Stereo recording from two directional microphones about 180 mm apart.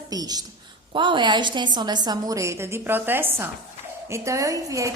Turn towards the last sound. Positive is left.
turn(degrees=-20)  # may be behind; listen again after turning